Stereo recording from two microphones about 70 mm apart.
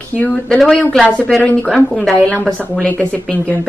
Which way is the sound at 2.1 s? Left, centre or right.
Centre.